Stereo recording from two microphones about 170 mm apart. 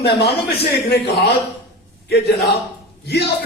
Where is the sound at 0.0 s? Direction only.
70° left (ahead or behind).